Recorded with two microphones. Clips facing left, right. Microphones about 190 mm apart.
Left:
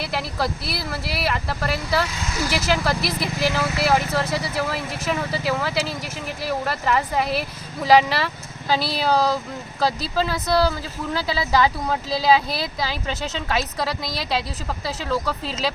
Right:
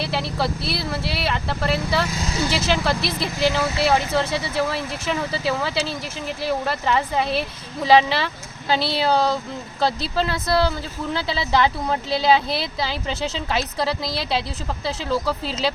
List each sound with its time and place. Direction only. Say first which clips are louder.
0.1 s speech: right 1 dB; centre (ahead or behind)
2.4 s speech: right 1 dB; 25° right (ahead or behind)
2.6 s speech: left 1 dB; 5° left (ahead or behind)
3.0 s speech: right 1 dB; 25° right (ahead or behind)
3.8 s speech: even; centre (ahead or behind)
14.0 s speech: right 2 dB; 30° right (ahead or behind)
14.8 s speech: right 2 dB; centre (ahead or behind)